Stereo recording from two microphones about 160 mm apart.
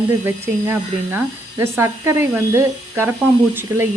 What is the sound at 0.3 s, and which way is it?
Speech, 15° right (ahead or behind).